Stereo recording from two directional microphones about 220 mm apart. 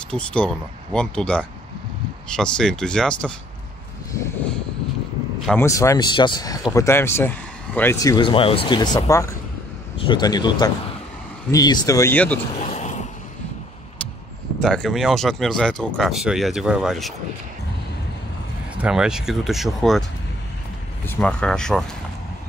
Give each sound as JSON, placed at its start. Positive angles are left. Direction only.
{"t": 0.1, "sound": "speech", "side_deg": 5}
{"t": 5.5, "sound": "speech", "side_deg": 10}
{"t": 12.6, "sound": "a sound", "side_deg": 30}
{"t": 14.6, "sound": "speech", "side_deg": 0}
{"t": 18.8, "sound": "speech", "side_deg": -5}